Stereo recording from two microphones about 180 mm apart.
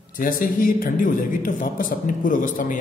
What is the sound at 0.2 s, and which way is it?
Speech, 50° left (ahead or behind).